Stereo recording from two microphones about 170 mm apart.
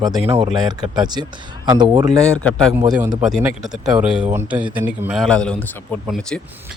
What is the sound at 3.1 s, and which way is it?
Speech, 5° right (ahead or behind).